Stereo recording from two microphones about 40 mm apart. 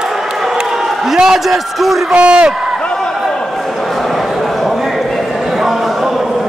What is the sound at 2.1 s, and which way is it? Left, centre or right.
Speech, right.